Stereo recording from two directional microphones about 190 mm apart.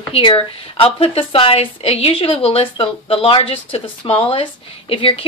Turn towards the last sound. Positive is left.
turn(degrees=30)  # may be behind; listen again after turning